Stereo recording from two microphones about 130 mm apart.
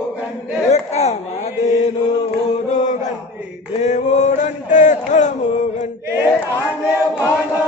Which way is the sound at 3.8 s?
60° left (ahead or behind).